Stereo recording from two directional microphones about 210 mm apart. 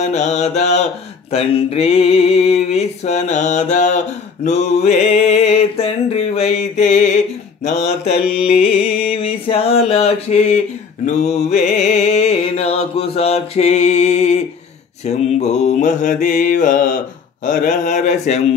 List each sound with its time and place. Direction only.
0.0 s mantra: 35° left (ahead or behind)
1.3 s a sound: 30° left (ahead or behind)
7.6 s mantra: 35° left (ahead or behind)
8.4 s a sound: 35° left (ahead or behind)
11.1 s music: 35° left (ahead or behind)
15.0 s mantra: 30° left (ahead or behind)